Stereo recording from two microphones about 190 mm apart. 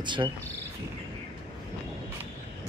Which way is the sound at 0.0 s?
25° right (ahead or behind).